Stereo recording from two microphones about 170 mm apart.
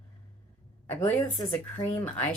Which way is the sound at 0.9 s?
10° left (ahead or behind).